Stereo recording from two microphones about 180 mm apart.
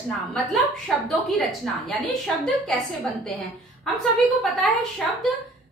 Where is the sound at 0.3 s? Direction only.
Centre (ahead or behind).